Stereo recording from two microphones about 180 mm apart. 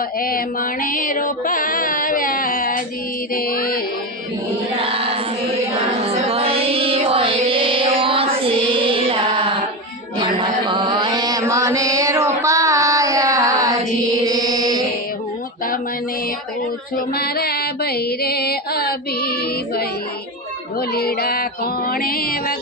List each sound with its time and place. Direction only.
0.2 s music: 55° left (ahead or behind)
4.8 s child singing: 30° right (ahead or behind)
6.0 s music: 35° right (ahead or behind)
10.7 s mantra: 25° right (ahead or behind)
17.2 s a sound: 60° left (ahead or behind)